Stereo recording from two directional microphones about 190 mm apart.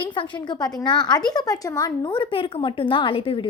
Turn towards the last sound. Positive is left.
turn(degrees=30)  # may be behind; listen again after turning